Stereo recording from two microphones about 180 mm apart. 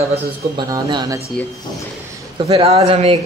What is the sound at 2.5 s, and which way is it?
Speech, 35° right (ahead or behind).